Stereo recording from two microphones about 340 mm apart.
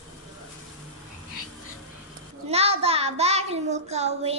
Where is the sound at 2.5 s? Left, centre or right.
Centre.